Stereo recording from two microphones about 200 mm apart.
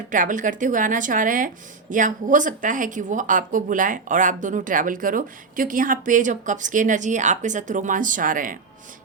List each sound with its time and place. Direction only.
0.1 s speech: 40° right (ahead or behind)